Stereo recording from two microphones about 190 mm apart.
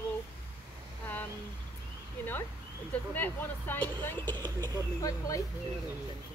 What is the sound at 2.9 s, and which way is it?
Speech, 10° left (ahead or behind).